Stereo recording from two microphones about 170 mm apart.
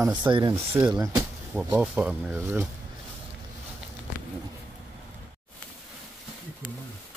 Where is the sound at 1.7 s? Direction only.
10° right (ahead or behind).